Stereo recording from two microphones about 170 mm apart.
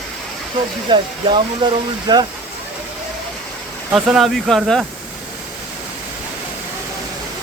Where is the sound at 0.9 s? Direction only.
30° right (ahead or behind).